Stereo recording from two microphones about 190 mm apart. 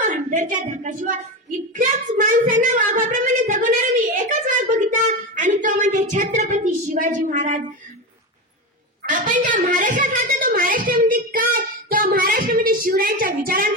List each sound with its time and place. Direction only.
0.0 s a woman's voice: 40° right (ahead or behind)
1.7 s a sound: 45° right (ahead or behind)
9.0 s a woman's voice: 45° right (ahead or behind)
11.5 s child singing: 50° right (ahead or behind)